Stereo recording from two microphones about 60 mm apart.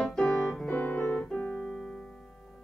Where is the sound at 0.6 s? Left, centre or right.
Left.